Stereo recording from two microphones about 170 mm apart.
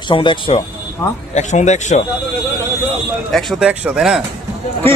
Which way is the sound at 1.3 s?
45° left (ahead or behind).